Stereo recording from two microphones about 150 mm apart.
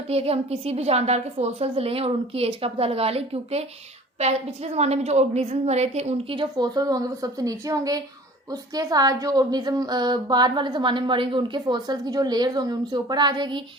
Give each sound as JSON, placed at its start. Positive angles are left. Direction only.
{"t": 0.1, "sound": "a woman's voice", "side_deg": -40}